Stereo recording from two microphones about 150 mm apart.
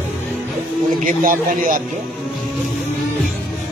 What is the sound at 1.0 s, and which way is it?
Speech, 65° right (ahead or behind).